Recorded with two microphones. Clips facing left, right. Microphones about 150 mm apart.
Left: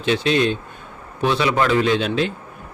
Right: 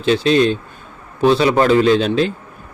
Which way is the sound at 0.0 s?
35° right (ahead or behind).